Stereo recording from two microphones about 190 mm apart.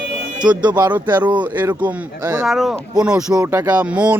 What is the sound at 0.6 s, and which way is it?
Speech, 25° right (ahead or behind).